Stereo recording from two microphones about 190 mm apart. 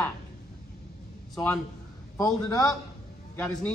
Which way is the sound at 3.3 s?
10° left (ahead or behind).